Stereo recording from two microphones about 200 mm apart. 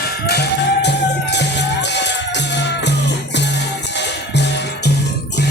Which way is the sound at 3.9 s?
60° left (ahead or behind).